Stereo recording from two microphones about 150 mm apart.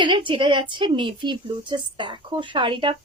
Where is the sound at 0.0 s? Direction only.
30° right (ahead or behind).